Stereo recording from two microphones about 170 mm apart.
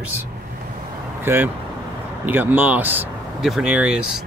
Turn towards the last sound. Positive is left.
turn(degrees=-5)  # may be behind; listen again after turning